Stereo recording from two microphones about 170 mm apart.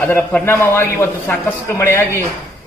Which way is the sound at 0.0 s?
10° left (ahead or behind).